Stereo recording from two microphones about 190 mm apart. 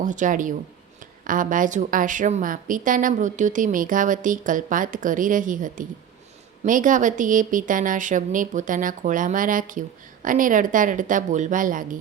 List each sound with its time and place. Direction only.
0.0 s a woman's voice: 40° right (ahead or behind)